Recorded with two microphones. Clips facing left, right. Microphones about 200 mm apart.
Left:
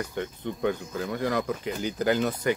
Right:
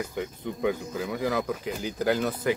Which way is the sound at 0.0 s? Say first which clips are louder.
Even; 5° right (ahead or behind).